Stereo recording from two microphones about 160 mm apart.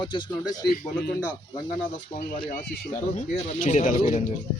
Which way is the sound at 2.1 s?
60° left (ahead or behind).